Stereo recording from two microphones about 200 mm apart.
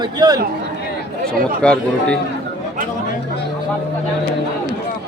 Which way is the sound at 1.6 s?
5° left (ahead or behind).